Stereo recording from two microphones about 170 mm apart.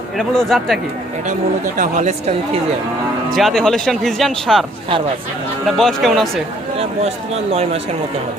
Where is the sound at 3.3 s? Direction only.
Centre (ahead or behind).